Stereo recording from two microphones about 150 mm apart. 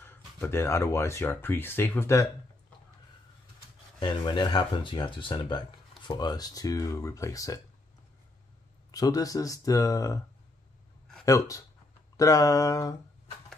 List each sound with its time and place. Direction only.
0.0 s speech: 15° left (ahead or behind)
4.0 s speech: 30° left (ahead or behind)
8.9 s speech: 25° left (ahead or behind)
11.2 s speech: 20° left (ahead or behind)